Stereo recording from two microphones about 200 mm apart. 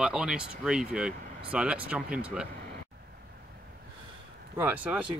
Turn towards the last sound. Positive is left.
turn(degrees=-10)  # may be behind; listen again after turning